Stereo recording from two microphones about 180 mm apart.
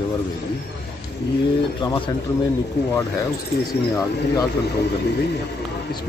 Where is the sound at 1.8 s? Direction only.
25° left (ahead or behind).